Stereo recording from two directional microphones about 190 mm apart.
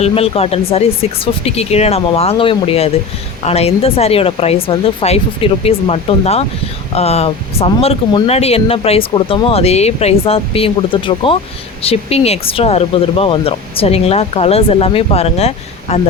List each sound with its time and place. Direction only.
0.0 s speech: 30° left (ahead or behind)